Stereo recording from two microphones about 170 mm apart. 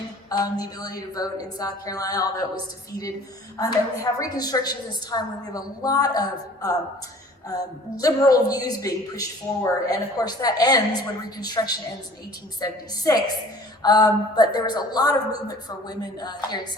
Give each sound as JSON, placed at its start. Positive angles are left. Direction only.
{"t": 0.3, "sound": "a woman's voice", "side_deg": 20}
{"t": 3.6, "sound": "a woman's voice", "side_deg": 20}